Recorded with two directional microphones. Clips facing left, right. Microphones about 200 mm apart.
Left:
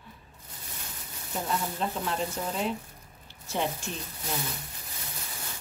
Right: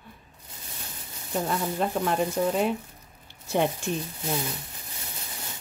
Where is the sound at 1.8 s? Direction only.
55° right (ahead or behind).